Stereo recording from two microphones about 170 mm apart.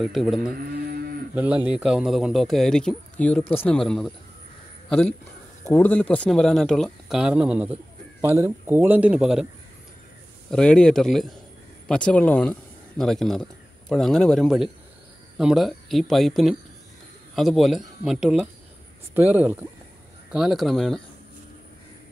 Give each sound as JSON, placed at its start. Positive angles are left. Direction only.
{"t": 0.0, "sound": "speech", "side_deg": 0}
{"t": 0.6, "sound": "a sound", "side_deg": -65}
{"t": 1.3, "sound": "speech", "side_deg": -10}
{"t": 10.5, "sound": "speech", "side_deg": 5}